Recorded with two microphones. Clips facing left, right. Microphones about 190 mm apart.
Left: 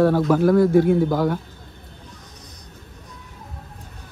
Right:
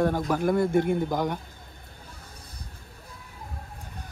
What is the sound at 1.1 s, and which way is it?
Mantra, 15° right (ahead or behind).